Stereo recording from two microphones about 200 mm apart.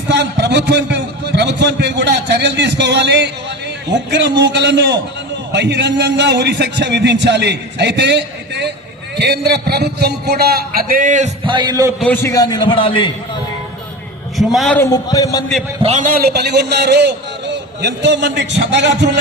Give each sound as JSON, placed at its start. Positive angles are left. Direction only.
{"t": 0.1, "sound": "a man's voice", "side_deg": -55}
{"t": 11.4, "sound": "a man's voice", "side_deg": -20}
{"t": 11.9, "sound": "a man's voice", "side_deg": 10}
{"t": 14.3, "sound": "a woman's voice", "side_deg": 0}
{"t": 14.8, "sound": "a man's voice", "side_deg": 15}
{"t": 15.8, "sound": "a man's voice", "side_deg": -35}